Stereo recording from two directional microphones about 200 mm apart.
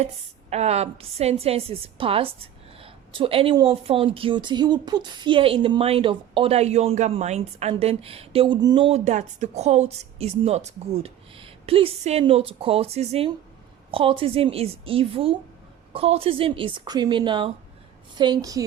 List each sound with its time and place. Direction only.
0.5 s a woman's voice: 30° right (ahead or behind)